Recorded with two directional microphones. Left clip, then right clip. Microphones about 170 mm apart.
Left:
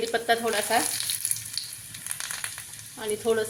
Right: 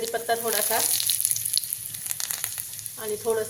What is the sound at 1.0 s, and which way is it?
Frying, 40° right (ahead or behind).